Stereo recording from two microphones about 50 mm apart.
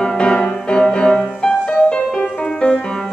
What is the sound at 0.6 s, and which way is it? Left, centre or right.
Music, centre.